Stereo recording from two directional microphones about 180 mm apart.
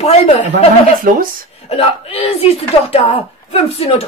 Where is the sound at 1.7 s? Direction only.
35° left (ahead or behind).